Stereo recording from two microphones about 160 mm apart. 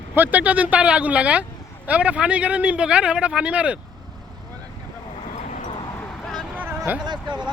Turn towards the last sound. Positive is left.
turn(degrees=-25)  # may be behind; listen again after turning